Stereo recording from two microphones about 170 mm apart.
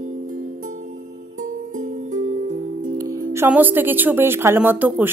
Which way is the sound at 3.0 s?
15° right (ahead or behind).